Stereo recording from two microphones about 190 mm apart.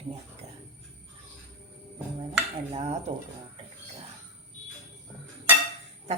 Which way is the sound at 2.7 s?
35° right (ahead or behind).